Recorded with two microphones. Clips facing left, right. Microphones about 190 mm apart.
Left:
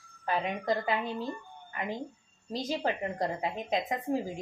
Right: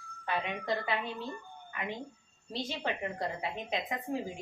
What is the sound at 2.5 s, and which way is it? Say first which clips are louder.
Speech: left 4 dB; 40° left (ahead or behind).